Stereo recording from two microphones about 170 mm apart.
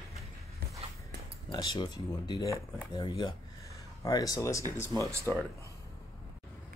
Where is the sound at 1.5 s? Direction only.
25° left (ahead or behind).